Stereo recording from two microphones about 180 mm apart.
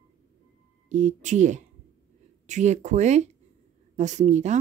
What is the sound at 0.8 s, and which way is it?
Speech, 40° right (ahead or behind).